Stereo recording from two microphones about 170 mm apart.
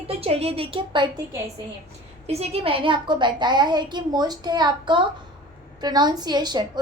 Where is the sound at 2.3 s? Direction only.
35° right (ahead or behind).